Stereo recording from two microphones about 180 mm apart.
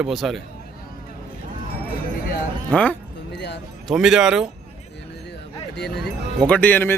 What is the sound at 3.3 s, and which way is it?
Music, 70° left (ahead or behind).